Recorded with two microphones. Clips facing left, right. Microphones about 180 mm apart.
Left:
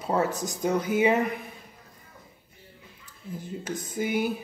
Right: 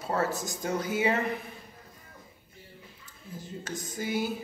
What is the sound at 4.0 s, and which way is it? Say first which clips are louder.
Speech: left 4 dB; 20° left (ahead or behind).